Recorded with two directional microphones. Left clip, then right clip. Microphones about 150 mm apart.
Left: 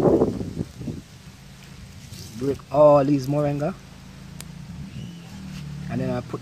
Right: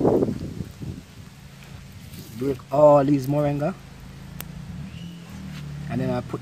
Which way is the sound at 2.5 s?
15° left (ahead or behind).